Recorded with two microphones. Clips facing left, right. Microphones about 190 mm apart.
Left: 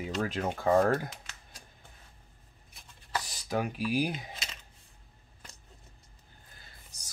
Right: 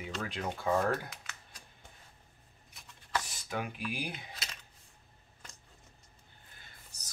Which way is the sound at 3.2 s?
40° left (ahead or behind).